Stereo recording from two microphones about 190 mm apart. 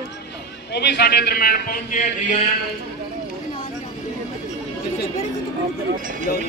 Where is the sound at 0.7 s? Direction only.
60° left (ahead or behind).